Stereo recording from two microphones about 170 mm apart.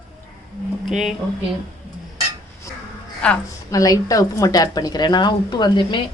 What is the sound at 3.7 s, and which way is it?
A woman's voice, 20° left (ahead or behind).